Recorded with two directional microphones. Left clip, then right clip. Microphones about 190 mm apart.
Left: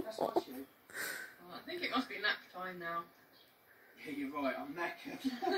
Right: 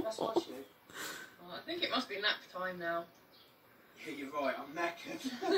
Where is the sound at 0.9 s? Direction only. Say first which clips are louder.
Left 2 dB; 5° left (ahead or behind).